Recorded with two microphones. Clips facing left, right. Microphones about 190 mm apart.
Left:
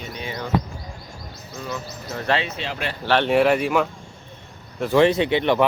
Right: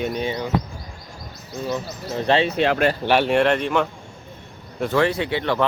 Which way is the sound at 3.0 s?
10° right (ahead or behind).